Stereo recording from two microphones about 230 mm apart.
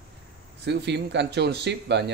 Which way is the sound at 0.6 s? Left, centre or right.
Right.